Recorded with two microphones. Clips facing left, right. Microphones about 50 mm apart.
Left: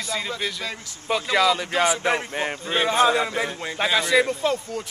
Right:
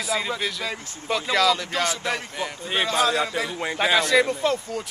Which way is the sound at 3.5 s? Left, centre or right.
Centre.